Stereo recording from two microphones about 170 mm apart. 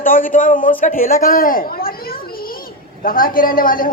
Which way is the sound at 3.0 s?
55° left (ahead or behind).